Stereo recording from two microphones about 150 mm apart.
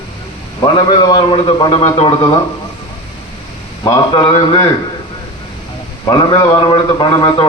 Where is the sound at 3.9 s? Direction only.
30° left (ahead or behind).